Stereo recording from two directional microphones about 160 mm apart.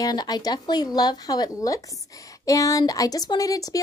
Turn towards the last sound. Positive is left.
turn(degrees=20)  # may be behind; listen again after turning